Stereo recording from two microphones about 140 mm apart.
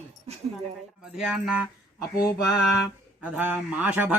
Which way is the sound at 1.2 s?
5° right (ahead or behind).